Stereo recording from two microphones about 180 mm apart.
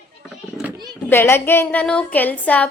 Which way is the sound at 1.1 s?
10° left (ahead or behind).